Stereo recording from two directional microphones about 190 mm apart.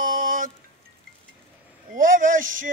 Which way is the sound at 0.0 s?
45° right (ahead or behind).